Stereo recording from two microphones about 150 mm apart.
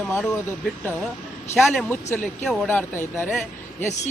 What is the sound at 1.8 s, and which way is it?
Speech, 15° left (ahead or behind).